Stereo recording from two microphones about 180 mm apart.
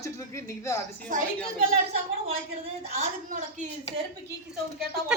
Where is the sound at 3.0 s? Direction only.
45° right (ahead or behind).